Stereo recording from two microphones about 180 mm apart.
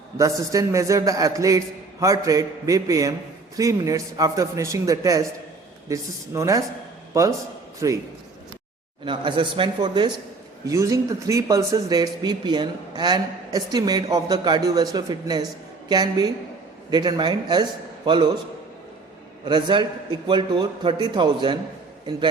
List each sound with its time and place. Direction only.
0.2 s a man's voice: 20° right (ahead or behind)
9.0 s a man's voice: 25° right (ahead or behind)
19.5 s a man's voice: 25° right (ahead or behind)